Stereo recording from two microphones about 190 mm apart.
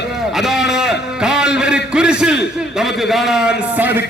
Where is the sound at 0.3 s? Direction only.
Centre (ahead or behind).